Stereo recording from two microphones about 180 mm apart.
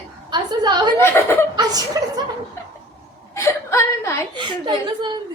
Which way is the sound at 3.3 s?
15° left (ahead or behind).